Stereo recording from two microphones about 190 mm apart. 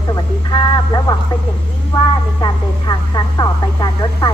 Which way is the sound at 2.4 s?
20° left (ahead or behind).